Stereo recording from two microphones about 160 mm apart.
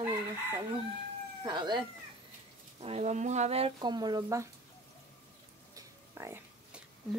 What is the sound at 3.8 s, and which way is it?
Speech, 25° right (ahead or behind).